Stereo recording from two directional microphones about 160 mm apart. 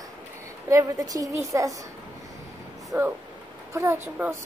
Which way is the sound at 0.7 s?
20° right (ahead or behind).